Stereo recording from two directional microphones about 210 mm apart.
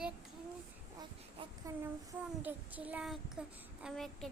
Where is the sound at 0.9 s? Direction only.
15° right (ahead or behind).